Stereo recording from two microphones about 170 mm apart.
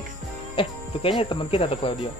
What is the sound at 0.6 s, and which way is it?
Speech, 30° left (ahead or behind).